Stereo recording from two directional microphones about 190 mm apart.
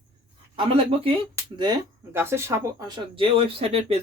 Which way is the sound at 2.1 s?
15° right (ahead or behind).